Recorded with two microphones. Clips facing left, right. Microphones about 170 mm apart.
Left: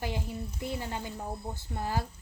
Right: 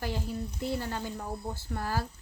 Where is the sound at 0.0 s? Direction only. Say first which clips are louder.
Right 1 dB; 15° left (ahead or behind).